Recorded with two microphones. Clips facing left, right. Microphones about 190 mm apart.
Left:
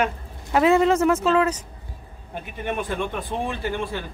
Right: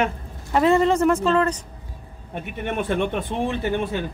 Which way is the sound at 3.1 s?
20° right (ahead or behind).